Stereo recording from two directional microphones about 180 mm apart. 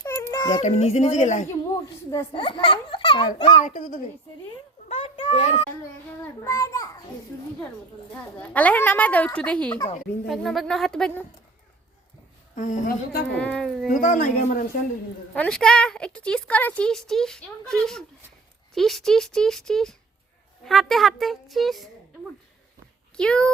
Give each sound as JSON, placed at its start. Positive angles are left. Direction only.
{"t": 0.0, "sound": "a sound", "side_deg": 15}
{"t": 0.6, "sound": "speech", "side_deg": 35}
{"t": 1.7, "sound": "a child's voice", "side_deg": 15}
{"t": 2.3, "sound": "a child's voice", "side_deg": 30}
{"t": 3.5, "sound": "a woman's voice", "side_deg": 40}
{"t": 4.9, "sound": "a sound", "side_deg": 30}
{"t": 6.2, "sound": "a woman's voice", "side_deg": 15}
{"t": 8.1, "sound": "a woman's voice", "side_deg": 10}
{"t": 12.5, "sound": "a woman's voice", "side_deg": 45}
{"t": 13.3, "sound": "speech", "side_deg": 5}
{"t": 14.0, "sound": "a woman's voice", "side_deg": 45}
{"t": 15.4, "sound": "speech", "side_deg": 5}
{"t": 23.1, "sound": "speech", "side_deg": 5}